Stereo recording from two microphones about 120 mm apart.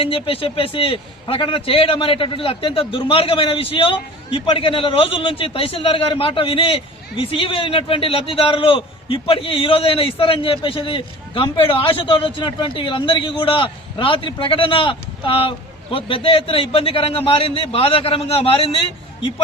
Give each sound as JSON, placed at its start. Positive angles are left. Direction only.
{"t": 0.0, "sound": "a man's voice", "side_deg": 50}